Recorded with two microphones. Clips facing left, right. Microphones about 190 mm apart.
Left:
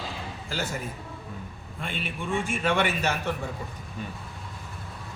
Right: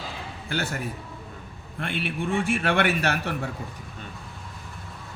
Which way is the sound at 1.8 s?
65° right (ahead or behind).